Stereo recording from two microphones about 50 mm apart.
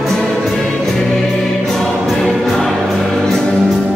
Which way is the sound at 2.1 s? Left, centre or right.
Centre.